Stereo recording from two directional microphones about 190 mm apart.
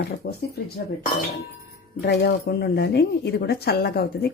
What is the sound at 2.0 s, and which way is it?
Speech, 60° left (ahead or behind).